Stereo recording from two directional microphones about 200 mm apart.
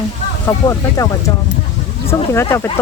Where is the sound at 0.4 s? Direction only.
15° left (ahead or behind).